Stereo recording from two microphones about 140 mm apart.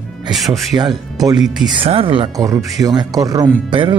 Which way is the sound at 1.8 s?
40° right (ahead or behind).